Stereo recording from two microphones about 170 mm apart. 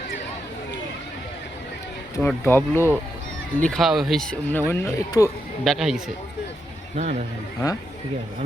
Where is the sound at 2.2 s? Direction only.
15° left (ahead or behind).